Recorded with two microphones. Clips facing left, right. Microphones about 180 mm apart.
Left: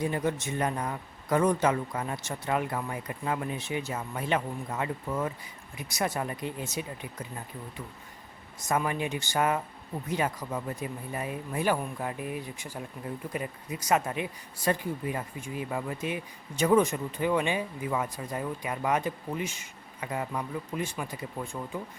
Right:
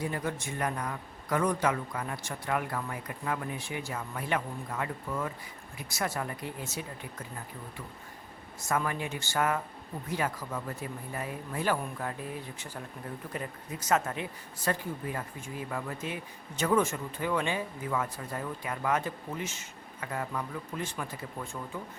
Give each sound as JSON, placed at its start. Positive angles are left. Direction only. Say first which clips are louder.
{"t": 0.0, "sound": "a man's voice", "louder": "left 4 dB", "side_deg": 20}
{"t": 8.6, "sound": "speech", "louder": "left 3 dB", "side_deg": 20}